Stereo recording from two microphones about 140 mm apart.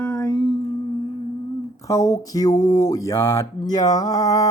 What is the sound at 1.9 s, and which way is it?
Speech, 25° left (ahead or behind).